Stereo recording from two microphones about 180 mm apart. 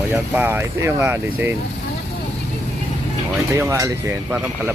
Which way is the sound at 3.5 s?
15° right (ahead or behind).